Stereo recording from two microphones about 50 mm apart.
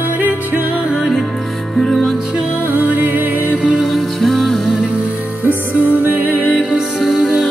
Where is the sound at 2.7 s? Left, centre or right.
Right.